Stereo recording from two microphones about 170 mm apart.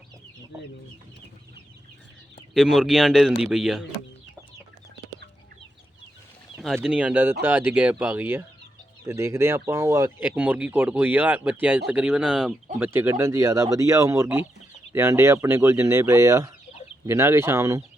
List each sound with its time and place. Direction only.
2.5 s speech: centre (ahead or behind)
6.7 s speech: 5° right (ahead or behind)